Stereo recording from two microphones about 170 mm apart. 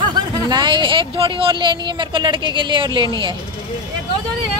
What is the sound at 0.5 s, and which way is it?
Speech, 25° right (ahead or behind).